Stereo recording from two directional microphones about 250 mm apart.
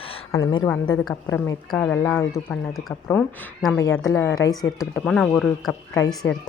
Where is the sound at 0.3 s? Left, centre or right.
Centre.